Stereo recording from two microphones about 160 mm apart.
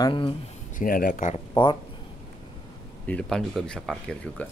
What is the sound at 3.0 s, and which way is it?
Speech, 10° left (ahead or behind).